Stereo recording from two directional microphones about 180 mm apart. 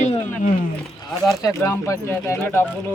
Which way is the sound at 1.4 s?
15° left (ahead or behind).